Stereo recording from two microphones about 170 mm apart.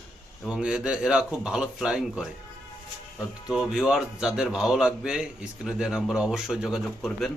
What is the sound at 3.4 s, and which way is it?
A man's voice, 5° right (ahead or behind).